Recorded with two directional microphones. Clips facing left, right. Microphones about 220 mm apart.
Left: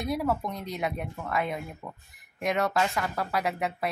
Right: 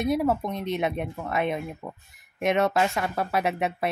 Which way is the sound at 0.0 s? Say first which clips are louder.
Right 5 dB; 20° right (ahead or behind).